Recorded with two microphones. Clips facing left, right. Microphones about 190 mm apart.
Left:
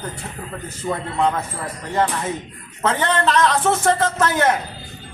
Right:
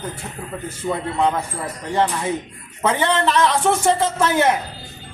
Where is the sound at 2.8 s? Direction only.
10° right (ahead or behind).